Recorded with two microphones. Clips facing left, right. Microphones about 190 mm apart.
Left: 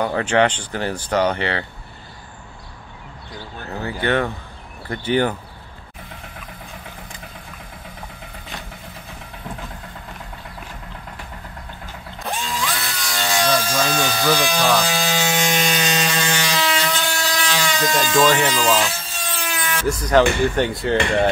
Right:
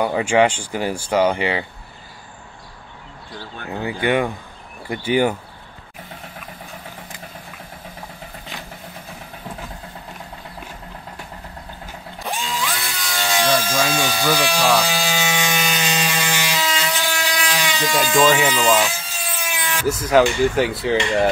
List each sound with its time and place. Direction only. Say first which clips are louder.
0.0 s speech: right 1 dB; 10° right (ahead or behind)
3.6 s speech: right 2 dB; 15° right (ahead or behind)
12.3 s music: even; centre (ahead or behind)
12.8 s wood: even; 10° right (ahead or behind)
18.9 s a sound: even; 10° right (ahead or behind)
20.1 s speech: right 1 dB; 5° right (ahead or behind)